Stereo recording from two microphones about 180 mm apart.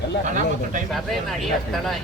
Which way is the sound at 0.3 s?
45° right (ahead or behind).